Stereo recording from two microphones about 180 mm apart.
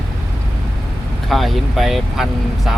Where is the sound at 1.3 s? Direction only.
Centre (ahead or behind).